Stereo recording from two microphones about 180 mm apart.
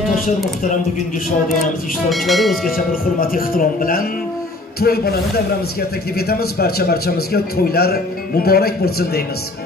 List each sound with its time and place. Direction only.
2.0 s speech: centre (ahead or behind)
2.9 s a man's voice: 55° left (ahead or behind)